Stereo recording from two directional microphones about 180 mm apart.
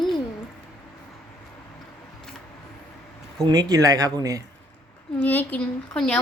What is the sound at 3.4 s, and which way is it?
Speech, 20° right (ahead or behind).